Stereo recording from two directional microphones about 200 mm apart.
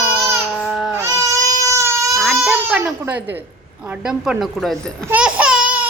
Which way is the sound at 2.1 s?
Centre (ahead or behind).